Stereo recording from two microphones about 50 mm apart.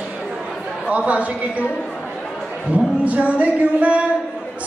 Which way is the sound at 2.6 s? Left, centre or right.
Right.